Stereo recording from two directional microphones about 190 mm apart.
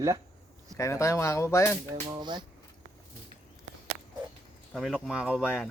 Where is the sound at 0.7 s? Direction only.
15° left (ahead or behind).